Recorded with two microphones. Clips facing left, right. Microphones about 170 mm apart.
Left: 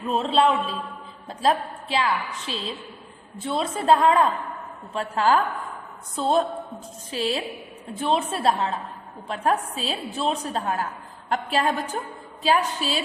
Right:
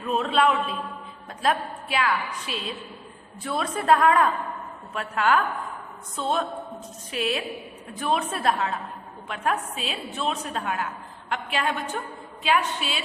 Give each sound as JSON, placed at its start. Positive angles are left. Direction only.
{"t": 0.1, "sound": "a woman's voice", "side_deg": 30}